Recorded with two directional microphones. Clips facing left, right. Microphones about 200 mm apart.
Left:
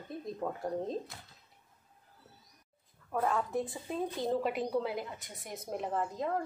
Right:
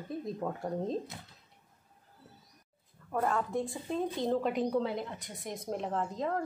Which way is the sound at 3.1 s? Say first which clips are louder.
Right 1 dB; centre (ahead or behind).